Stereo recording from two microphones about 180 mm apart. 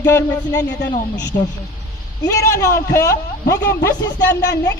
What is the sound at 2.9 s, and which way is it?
Speech, 20° left (ahead or behind).